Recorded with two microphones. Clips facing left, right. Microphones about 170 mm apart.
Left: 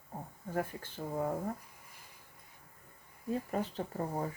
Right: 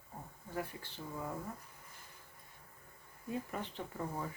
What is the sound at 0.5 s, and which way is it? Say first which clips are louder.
Speech: left 5 dB; 50° left (ahead or behind).